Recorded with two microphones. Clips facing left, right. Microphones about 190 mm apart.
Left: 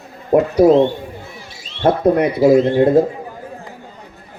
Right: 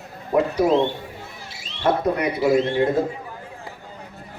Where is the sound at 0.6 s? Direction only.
35° left (ahead or behind).